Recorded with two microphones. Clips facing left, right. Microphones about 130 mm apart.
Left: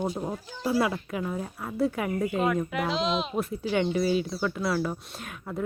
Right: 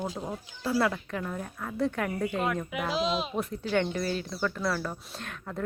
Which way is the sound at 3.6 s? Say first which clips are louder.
Left 3 dB; 10° left (ahead or behind).